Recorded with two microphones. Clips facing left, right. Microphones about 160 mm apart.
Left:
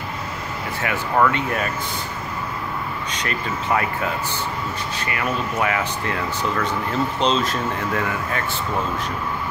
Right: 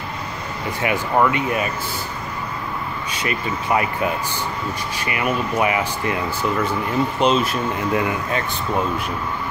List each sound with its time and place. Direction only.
0.8 s speech: 15° right (ahead or behind)
3.1 s speech: 10° right (ahead or behind)
4.9 s speech: 15° right (ahead or behind)